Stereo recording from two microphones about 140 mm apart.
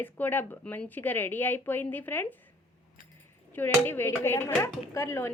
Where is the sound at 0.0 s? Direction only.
15° left (ahead or behind).